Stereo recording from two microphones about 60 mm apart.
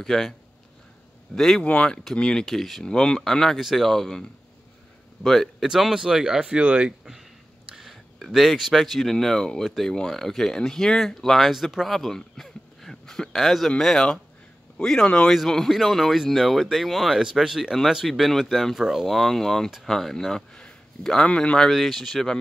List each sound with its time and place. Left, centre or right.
0.0 s speech: centre
1.3 s speech: centre
1.6 s speech: centre
2.4 s speech: centre
2.8 s speech: centre
3.5 s speech: centre
5.7 s speech: centre
7.7 s a sound: centre
9.1 s speech: centre
19.0 s speech: centre